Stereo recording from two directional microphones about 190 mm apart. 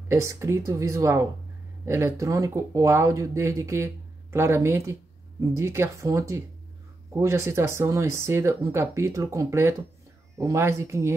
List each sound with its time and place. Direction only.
0.1 s speech: 15° right (ahead or behind)